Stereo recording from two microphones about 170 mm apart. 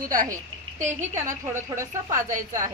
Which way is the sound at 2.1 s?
50° right (ahead or behind).